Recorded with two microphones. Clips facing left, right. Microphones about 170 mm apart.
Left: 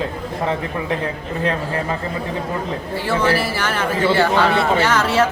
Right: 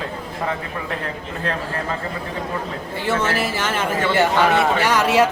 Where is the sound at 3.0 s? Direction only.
20° right (ahead or behind).